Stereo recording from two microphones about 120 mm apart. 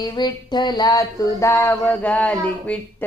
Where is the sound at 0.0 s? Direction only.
35° left (ahead or behind).